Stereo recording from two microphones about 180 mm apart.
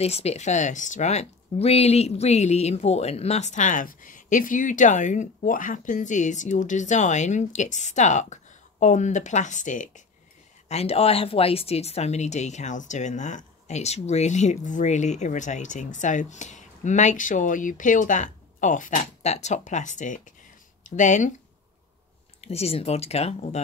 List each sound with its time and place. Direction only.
0.0 s speech: 35° left (ahead or behind)
22.4 s speech: 35° left (ahead or behind)